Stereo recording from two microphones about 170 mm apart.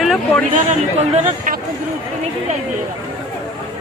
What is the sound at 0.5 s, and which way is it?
Speech, 45° right (ahead or behind).